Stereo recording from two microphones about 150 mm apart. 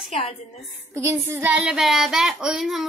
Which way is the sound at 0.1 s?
45° left (ahead or behind).